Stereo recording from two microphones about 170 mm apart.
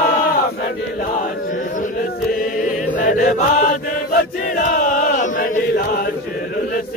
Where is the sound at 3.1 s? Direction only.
50° left (ahead or behind).